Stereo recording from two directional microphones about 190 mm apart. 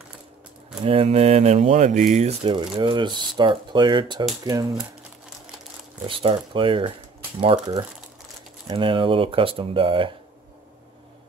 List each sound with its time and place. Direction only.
0.8 s speech: 30° right (ahead or behind)
6.0 s speech: 25° right (ahead or behind)
8.6 s speech: 25° right (ahead or behind)